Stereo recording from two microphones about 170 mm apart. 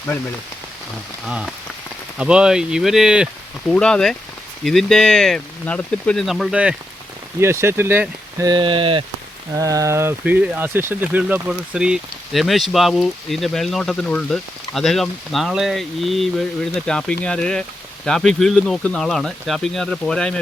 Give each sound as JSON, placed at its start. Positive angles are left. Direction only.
{"t": 2.1, "sound": "speech", "side_deg": -5}
{"t": 8.4, "sound": "speech", "side_deg": -30}
{"t": 9.6, "sound": "speech", "side_deg": -20}